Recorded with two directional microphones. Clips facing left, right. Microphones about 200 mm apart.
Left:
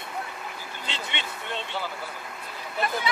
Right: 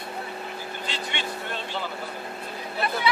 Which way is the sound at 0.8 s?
20° left (ahead or behind).